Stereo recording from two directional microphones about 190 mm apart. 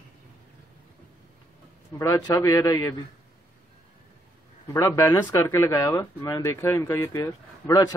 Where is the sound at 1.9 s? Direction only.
15° left (ahead or behind).